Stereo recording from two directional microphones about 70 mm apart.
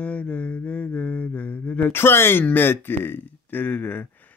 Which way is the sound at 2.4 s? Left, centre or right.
Left.